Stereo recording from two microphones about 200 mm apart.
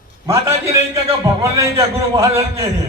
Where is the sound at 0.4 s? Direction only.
15° right (ahead or behind).